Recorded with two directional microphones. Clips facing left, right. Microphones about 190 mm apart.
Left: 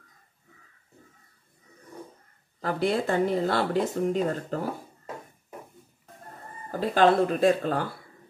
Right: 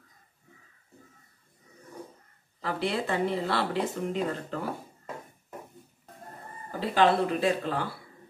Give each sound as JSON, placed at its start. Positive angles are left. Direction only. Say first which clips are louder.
{"t": 2.6, "sound": "speech", "louder": "left 4 dB", "side_deg": 45}
{"t": 6.8, "sound": "speech", "louder": "left 3 dB", "side_deg": 45}